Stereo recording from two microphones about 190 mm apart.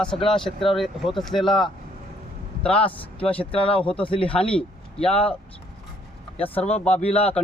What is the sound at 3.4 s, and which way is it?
Speech, 30° left (ahead or behind).